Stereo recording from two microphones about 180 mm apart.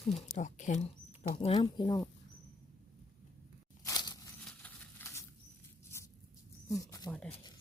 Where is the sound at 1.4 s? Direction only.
30° left (ahead or behind).